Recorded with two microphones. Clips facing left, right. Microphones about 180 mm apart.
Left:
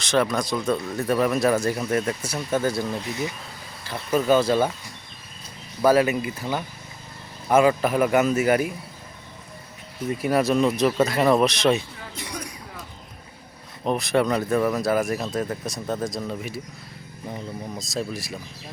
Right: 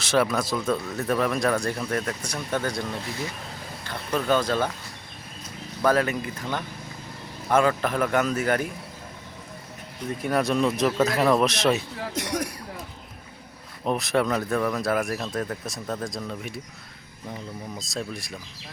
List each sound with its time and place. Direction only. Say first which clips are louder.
0.0 s speech: left 1 dB; 5° right (ahead or behind)
3.8 s speech: left 4 dB; 5° left (ahead or behind)
5.8 s speech: left 4 dB; 10° left (ahead or behind)
10.1 s speech: left 3 dB; 5° left (ahead or behind)
12.2 s a sound: right 6 dB; 85° right
13.8 s speech: left 2 dB; centre (ahead or behind)
17.7 s speech: left 4 dB; centre (ahead or behind)